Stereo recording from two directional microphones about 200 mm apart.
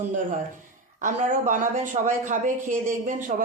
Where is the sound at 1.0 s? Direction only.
40° right (ahead or behind).